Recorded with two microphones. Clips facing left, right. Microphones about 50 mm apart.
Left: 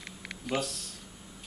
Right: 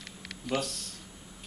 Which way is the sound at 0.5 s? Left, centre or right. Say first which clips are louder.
Even; centre.